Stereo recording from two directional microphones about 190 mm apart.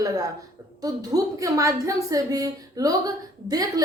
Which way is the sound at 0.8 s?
20° right (ahead or behind).